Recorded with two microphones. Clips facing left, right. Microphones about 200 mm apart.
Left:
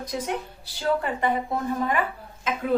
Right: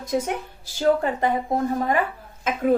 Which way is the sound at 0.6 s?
45° right (ahead or behind).